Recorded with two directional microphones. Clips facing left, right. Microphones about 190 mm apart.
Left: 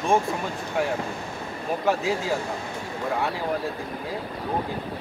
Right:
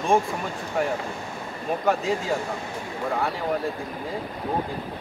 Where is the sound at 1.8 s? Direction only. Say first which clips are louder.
Even; centre (ahead or behind).